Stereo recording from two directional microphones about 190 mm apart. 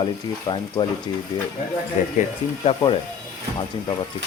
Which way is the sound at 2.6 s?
30° left (ahead or behind).